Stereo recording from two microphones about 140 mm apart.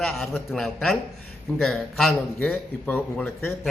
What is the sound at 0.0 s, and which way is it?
A man's voice, 5° left (ahead or behind).